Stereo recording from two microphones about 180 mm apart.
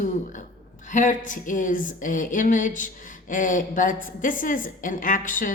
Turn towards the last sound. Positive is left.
turn(degrees=45)  # may be behind; listen again after turning